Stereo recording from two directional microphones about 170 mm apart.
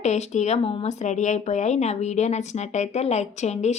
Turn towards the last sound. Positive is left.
turn(degrees=40)  # may be behind; listen again after turning